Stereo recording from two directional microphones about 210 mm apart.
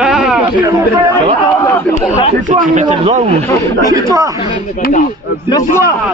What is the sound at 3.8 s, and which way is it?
Speech, 15° right (ahead or behind).